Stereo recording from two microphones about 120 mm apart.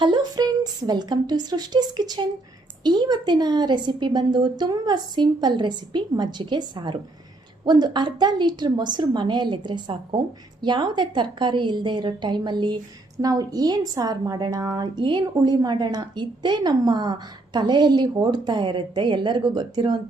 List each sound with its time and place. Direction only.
0.0 s a woman's voice: 40° right (ahead or behind)